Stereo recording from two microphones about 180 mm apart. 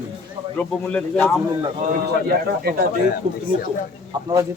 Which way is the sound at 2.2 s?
60° right (ahead or behind).